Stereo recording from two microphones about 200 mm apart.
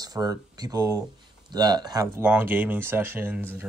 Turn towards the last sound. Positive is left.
turn(degrees=-10)  # may be behind; listen again after turning